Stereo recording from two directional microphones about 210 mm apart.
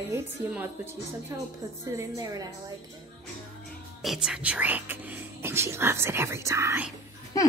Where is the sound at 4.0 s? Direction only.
Centre (ahead or behind).